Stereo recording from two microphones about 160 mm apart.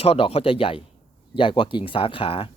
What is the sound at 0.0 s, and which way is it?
Speech, 40° left (ahead or behind).